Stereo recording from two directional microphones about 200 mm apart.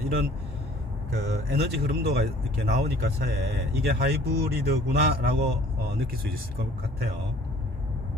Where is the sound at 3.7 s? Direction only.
55° right (ahead or behind).